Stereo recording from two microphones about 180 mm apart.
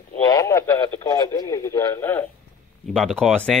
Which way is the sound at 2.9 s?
Centre (ahead or behind).